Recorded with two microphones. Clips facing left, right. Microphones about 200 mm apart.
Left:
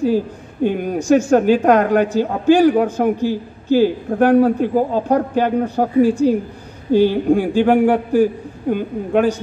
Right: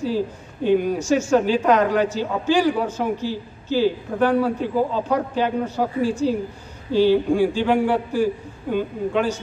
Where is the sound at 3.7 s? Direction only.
50° left (ahead or behind).